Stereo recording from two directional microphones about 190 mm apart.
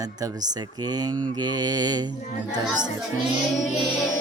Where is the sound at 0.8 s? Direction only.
20° right (ahead or behind).